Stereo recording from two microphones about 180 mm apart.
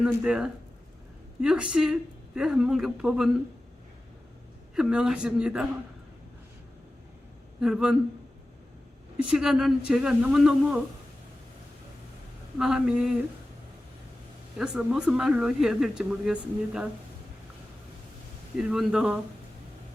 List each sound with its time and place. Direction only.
0.0 s speech: 5° right (ahead or behind)
4.7 s speech: 5° right (ahead or behind)
7.6 s speech: 5° right (ahead or behind)
9.2 s speech: 5° right (ahead or behind)
12.5 s speech: 5° right (ahead or behind)
14.6 s speech: 5° right (ahead or behind)
18.5 s speech: 5° right (ahead or behind)